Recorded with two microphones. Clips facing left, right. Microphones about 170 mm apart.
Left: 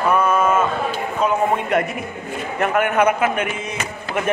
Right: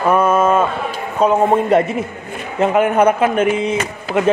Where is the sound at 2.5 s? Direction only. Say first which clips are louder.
Right 5 dB; 30° right (ahead or behind).